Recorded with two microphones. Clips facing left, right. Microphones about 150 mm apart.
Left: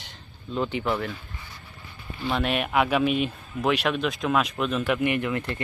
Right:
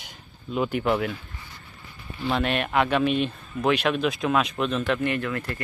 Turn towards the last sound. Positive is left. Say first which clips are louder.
# left 1 dB
turn(degrees=20)  # may be behind; listen again after turning